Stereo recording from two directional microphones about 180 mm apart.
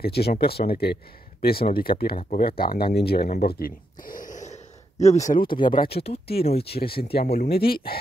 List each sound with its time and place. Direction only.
0.0 s speech: 60° left (ahead or behind); by 5.5 s 45° left (ahead or behind)
5.5 s speech: 25° left (ahead or behind)
6.8 s speech: 60° left (ahead or behind)